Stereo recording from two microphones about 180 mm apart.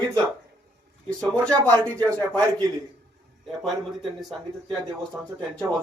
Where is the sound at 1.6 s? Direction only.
15° right (ahead or behind).